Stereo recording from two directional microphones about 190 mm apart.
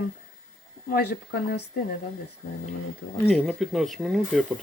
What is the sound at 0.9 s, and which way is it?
Speech, 55° left (ahead or behind).